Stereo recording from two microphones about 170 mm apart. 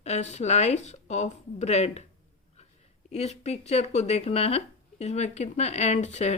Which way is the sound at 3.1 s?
40° left (ahead or behind).